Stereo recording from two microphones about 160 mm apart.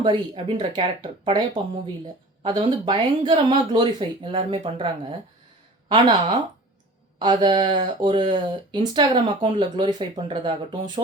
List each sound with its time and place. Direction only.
0.0 s speech: 30° right (ahead or behind)
5.9 s speech: 25° right (ahead or behind)